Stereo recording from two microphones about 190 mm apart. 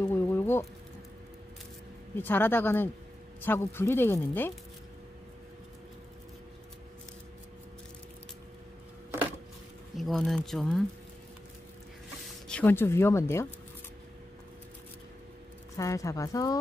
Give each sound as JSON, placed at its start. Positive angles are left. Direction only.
{"t": 0.1, "sound": "a sound", "side_deg": 10}
{"t": 2.1, "sound": "speech", "side_deg": 10}
{"t": 9.9, "sound": "speech", "side_deg": 0}
{"t": 12.3, "sound": "speech", "side_deg": 5}
{"t": 15.7, "sound": "speech", "side_deg": 15}